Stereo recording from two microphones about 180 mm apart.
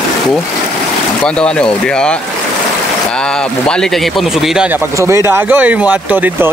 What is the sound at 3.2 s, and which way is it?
Speech, 5° left (ahead or behind).